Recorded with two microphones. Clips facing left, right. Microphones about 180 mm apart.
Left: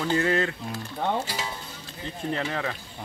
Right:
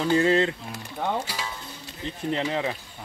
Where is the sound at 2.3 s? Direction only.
20° right (ahead or behind).